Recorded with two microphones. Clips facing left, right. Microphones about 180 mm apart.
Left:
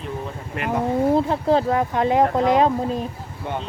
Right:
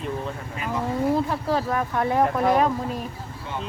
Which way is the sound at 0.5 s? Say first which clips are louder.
Left 7 dB; 65° left (ahead or behind).